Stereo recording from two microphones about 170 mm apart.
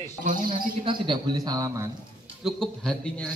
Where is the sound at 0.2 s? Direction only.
50° right (ahead or behind).